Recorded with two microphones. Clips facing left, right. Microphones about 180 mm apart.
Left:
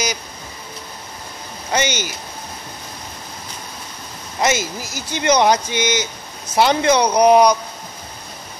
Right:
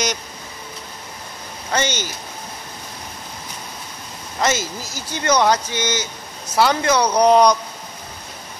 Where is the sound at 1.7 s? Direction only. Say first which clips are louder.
Left 1 dB; 15° left (ahead or behind).